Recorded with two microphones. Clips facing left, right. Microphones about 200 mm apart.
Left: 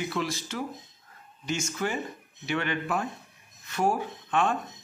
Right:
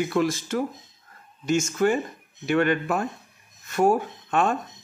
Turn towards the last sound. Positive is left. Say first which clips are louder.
# right 3 dB
turn(degrees=-45)  # may be behind; listen again after turning